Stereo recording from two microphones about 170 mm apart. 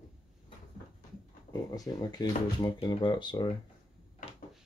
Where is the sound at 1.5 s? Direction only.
25° left (ahead or behind).